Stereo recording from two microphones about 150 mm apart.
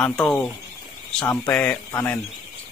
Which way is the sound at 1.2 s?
25° left (ahead or behind).